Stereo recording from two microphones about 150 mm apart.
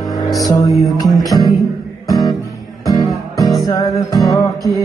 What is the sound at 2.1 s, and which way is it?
Music, 25° left (ahead or behind).